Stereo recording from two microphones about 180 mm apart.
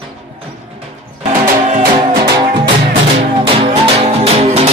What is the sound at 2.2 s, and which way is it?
Music, 25° right (ahead or behind).